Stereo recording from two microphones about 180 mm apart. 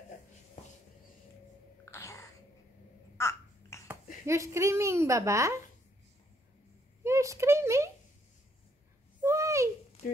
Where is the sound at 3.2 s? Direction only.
15° left (ahead or behind).